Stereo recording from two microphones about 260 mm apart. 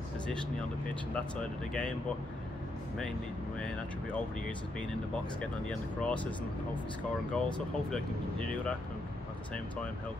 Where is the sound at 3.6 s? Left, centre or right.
Centre.